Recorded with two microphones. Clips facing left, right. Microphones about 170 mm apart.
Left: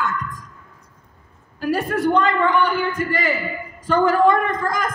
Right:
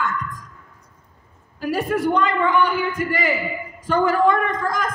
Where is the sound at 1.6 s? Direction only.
10° right (ahead or behind).